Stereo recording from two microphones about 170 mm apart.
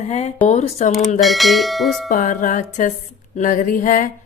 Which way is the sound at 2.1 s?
50° left (ahead or behind).